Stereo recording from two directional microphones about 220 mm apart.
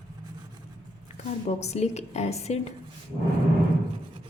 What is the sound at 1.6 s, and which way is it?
A woman's voice, 30° left (ahead or behind).